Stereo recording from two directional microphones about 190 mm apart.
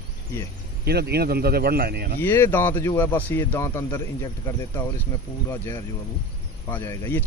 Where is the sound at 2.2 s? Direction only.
10° left (ahead or behind).